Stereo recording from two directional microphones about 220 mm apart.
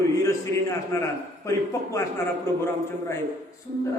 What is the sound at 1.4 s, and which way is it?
Speech, 15° left (ahead or behind).